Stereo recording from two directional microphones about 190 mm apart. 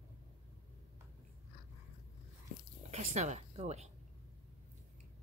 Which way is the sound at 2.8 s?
35° right (ahead or behind).